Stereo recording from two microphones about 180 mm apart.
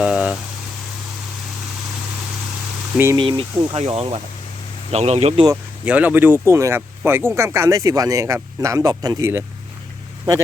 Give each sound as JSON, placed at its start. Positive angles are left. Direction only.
{"t": 0.0, "sound": "boiling", "side_deg": -5}
{"t": 3.2, "sound": "speech", "side_deg": -25}
{"t": 5.8, "sound": "speech", "side_deg": -10}